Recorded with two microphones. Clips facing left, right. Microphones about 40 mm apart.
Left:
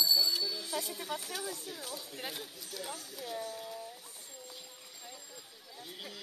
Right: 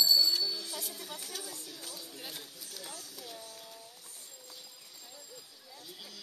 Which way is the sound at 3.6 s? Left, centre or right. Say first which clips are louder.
Left 7 dB; centre.